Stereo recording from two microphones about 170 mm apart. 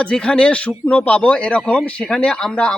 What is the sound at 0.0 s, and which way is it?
Speech, 5° left (ahead or behind).